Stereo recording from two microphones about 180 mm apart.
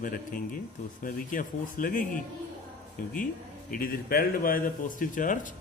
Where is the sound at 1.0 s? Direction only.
50° left (ahead or behind).